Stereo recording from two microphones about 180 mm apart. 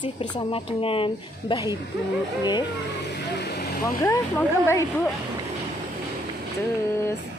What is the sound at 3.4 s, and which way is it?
Vehicle, 60° left (ahead or behind).